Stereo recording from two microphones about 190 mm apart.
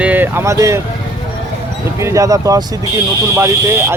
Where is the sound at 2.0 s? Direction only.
15° right (ahead or behind).